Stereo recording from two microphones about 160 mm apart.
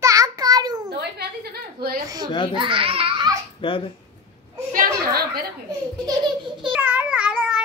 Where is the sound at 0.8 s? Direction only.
85° right.